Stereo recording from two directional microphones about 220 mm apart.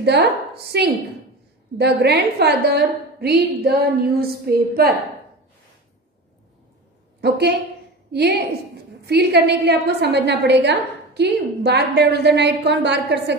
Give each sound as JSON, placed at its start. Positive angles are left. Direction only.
{"t": 0.0, "sound": "a woman's voice", "side_deg": -50}
{"t": 7.2, "sound": "a woman's voice", "side_deg": -50}